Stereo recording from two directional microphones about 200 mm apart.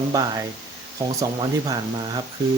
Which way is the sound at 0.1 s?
20° right (ahead or behind).